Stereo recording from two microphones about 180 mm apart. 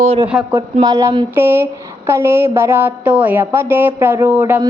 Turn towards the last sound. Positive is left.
turn(degrees=-10)  # may be behind; listen again after turning